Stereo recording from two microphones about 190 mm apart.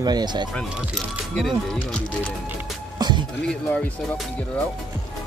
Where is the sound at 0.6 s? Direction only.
5° left (ahead or behind).